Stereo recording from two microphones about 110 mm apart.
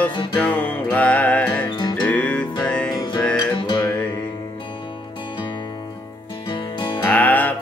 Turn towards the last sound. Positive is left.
turn(degrees=15)  # may be behind; listen again after turning